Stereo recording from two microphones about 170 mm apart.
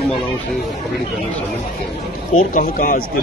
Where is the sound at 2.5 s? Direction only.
55° left (ahead or behind).